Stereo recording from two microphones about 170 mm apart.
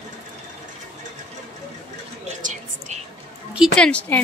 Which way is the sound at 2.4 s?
50° right (ahead or behind).